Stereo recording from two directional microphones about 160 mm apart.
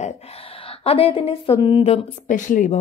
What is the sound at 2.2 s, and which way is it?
Speech, 55° left (ahead or behind).